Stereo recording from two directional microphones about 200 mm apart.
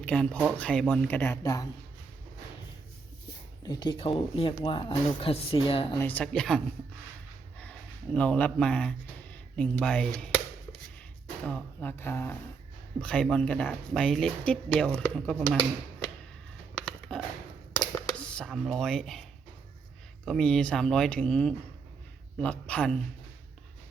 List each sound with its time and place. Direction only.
0.0 s speech: 5° left (ahead or behind)
3.6 s speech: 20° left (ahead or behind)
6.0 s speech: 5° left (ahead or behind)
7.6 s speech: 5° left (ahead or behind)
17.1 s a sound: centre (ahead or behind)
20.2 s speech: 5° left (ahead or behind)